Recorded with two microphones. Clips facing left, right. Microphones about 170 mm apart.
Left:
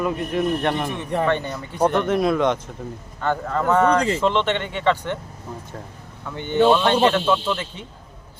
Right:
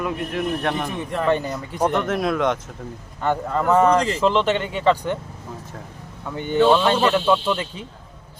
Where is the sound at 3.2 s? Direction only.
15° right (ahead or behind).